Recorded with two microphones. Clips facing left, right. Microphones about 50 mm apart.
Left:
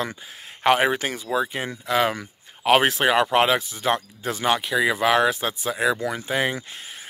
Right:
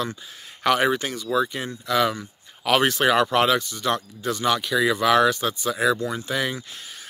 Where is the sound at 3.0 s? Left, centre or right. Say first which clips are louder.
Even; centre.